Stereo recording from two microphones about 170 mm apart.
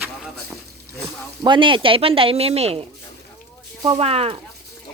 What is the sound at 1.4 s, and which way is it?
Speech, 30° right (ahead or behind).